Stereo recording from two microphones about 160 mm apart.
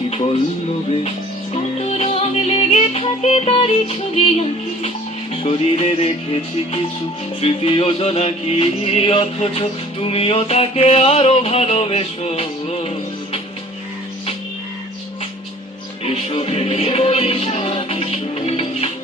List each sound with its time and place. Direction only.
1.5 s music: 40° left (ahead or behind)
7.4 s music: 35° left (ahead or behind)
16.0 s music: 40° left (ahead or behind)